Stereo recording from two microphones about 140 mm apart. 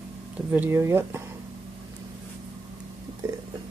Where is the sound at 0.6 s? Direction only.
15° right (ahead or behind).